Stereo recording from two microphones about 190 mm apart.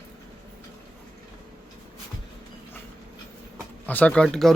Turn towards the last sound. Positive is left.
turn(degrees=0)  # may be behind; listen again after turning